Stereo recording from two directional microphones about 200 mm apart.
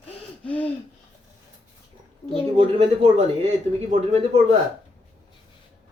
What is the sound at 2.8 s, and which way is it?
Speech, 35° right (ahead or behind).